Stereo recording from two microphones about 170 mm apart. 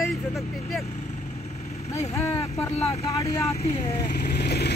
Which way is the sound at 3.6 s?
70° left (ahead or behind).